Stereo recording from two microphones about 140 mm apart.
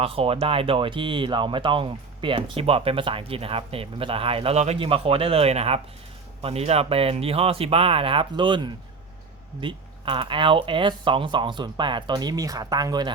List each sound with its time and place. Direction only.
0.0 s speech: 40° right (ahead or behind)